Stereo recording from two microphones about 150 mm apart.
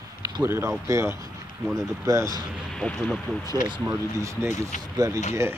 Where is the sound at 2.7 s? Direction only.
5° left (ahead or behind).